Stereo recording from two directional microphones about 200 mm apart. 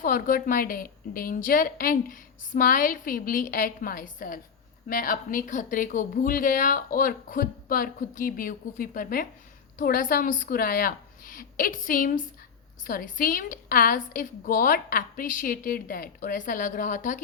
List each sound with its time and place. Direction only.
0.0 s a woman's voice: 45° left (ahead or behind)